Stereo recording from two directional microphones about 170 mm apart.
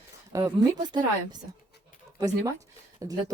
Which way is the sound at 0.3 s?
20° right (ahead or behind).